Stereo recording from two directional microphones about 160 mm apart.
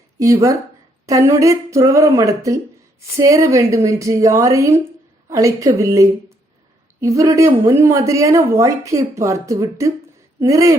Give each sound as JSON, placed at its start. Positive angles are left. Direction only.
{"t": 1.0, "sound": "speech", "side_deg": -20}